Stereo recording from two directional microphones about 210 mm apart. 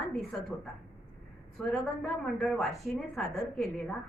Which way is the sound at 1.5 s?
Centre (ahead or behind).